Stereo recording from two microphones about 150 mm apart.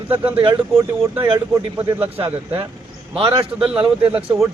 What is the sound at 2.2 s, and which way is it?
A man's voice, 35° right (ahead or behind).